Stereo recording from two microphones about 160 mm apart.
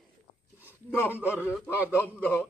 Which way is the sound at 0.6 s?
15° left (ahead or behind).